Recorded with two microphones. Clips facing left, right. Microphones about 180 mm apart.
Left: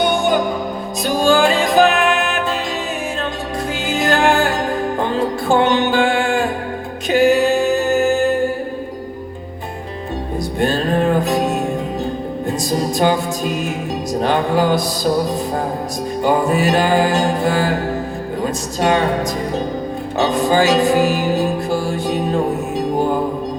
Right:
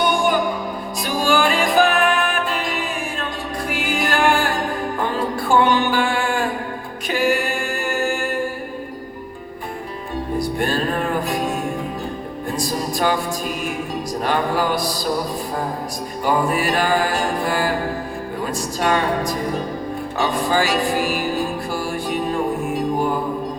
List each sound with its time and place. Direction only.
0.2 s music: 25° left (ahead or behind)
10.3 s music: 25° left (ahead or behind)
16.2 s music: 20° left (ahead or behind)